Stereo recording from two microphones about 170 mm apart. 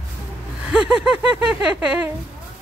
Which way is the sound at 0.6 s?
5° right (ahead or behind).